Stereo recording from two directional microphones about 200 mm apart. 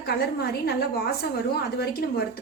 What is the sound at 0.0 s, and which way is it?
A woman's voice, 50° left (ahead or behind).